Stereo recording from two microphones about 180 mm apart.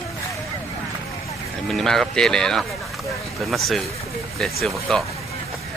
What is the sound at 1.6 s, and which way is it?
Speech, 5° left (ahead or behind).